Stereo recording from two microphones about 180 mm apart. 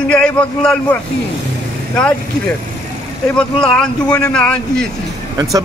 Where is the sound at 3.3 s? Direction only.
5° left (ahead or behind).